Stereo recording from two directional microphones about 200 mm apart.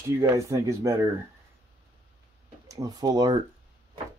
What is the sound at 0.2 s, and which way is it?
Speech, 15° right (ahead or behind).